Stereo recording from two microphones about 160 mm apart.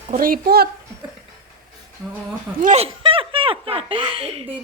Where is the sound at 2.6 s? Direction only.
40° right (ahead or behind).